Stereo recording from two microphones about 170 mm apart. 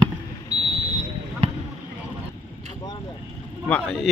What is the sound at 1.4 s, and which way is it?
Basketball bounce, 35° right (ahead or behind).